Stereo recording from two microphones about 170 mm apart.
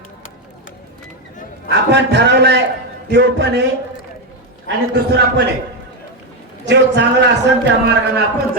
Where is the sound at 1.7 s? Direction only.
90° right.